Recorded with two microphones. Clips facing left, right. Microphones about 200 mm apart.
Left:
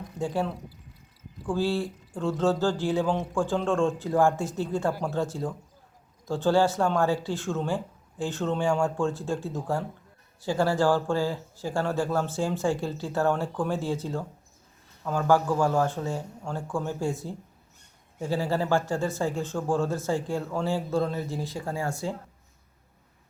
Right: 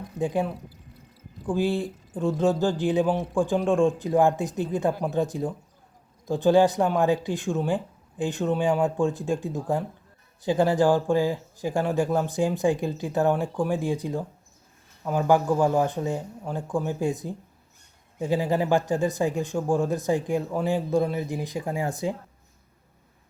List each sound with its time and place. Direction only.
0.2 s speech: 15° right (ahead or behind)